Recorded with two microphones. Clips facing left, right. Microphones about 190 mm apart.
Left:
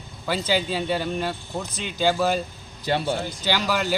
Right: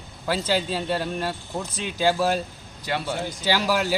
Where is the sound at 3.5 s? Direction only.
5° right (ahead or behind).